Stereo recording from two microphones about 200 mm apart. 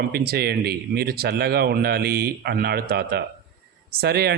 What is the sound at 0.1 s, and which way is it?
Speech, 50° right (ahead or behind).